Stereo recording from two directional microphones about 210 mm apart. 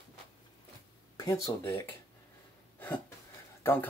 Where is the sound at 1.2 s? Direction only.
15° left (ahead or behind).